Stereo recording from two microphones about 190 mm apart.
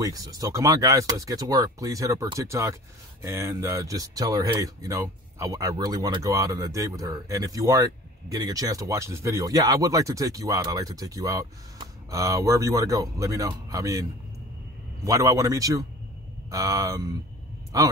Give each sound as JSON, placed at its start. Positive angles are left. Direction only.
{"t": 0.0, "sound": "speech", "side_deg": -20}
{"t": 15.0, "sound": "speech", "side_deg": -15}